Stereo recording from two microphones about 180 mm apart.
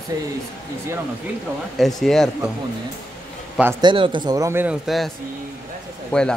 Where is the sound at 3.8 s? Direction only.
25° right (ahead or behind); by 5.1 s centre (ahead or behind).